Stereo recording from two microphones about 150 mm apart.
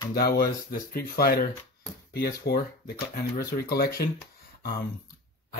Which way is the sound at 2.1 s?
90° left.